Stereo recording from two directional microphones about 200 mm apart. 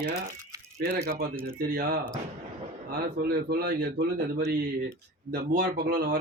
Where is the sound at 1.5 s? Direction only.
50° right (ahead or behind).